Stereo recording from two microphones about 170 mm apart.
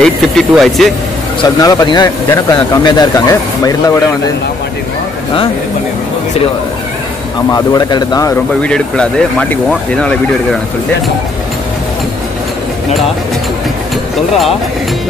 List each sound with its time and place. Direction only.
0.0 s speech: centre (ahead or behind)
1.4 s speech: 25° left (ahead or behind)
7.5 s speech: 25° left (ahead or behind)
8.6 s speech: 5° left (ahead or behind)